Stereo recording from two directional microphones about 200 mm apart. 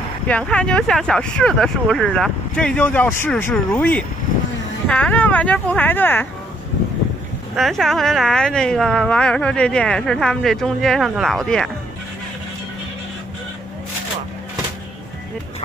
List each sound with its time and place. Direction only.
0.3 s speech: 5° left (ahead or behind)
7.5 s speech: centre (ahead or behind)